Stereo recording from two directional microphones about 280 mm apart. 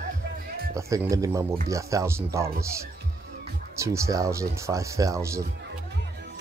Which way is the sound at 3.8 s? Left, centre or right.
Centre.